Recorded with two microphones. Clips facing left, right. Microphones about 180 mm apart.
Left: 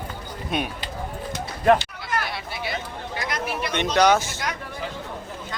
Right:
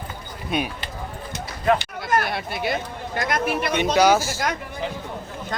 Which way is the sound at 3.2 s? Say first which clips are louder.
Right 5 dB; 50° right (ahead or behind).